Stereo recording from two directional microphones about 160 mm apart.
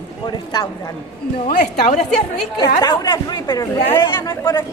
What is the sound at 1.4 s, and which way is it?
Speech, 55° left (ahead or behind).